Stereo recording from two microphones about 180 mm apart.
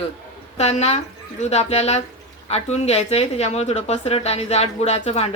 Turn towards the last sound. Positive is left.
turn(degrees=35)  # may be behind; listen again after turning